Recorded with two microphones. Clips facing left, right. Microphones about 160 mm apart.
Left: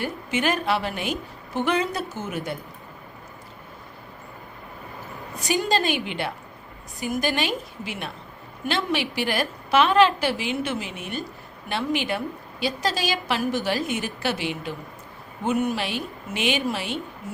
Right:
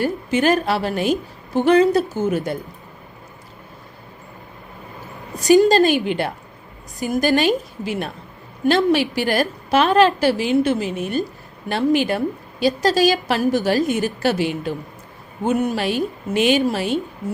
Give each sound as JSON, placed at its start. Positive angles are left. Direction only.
{"t": 0.0, "sound": "a woman's voice", "side_deg": -40}
{"t": 5.4, "sound": "a woman's voice", "side_deg": -40}